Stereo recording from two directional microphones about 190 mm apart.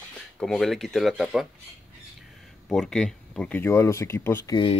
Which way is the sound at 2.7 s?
5° left (ahead or behind).